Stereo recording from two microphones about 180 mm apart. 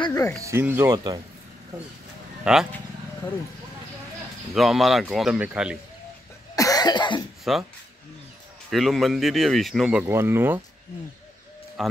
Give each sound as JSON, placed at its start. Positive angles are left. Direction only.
{"t": 0.0, "sound": "music", "side_deg": 15}
{"t": 0.4, "sound": "speech", "side_deg": -15}
{"t": 2.4, "sound": "speech", "side_deg": -5}
{"t": 4.6, "sound": "speech", "side_deg": 0}
{"t": 6.5, "sound": "cough", "side_deg": 20}
{"t": 7.5, "sound": "speech", "side_deg": 0}
{"t": 8.6, "sound": "speech", "side_deg": 0}
{"t": 11.8, "sound": "speech", "side_deg": 0}